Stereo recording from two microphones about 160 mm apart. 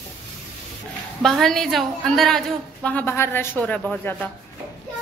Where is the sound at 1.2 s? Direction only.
Centre (ahead or behind).